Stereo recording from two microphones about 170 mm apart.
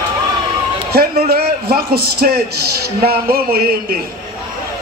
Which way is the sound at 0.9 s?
65° right (ahead or behind).